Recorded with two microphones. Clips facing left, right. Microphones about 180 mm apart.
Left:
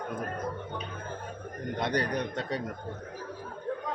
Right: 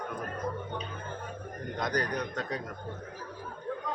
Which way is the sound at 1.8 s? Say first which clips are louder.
Left 2 dB; 30° left (ahead or behind).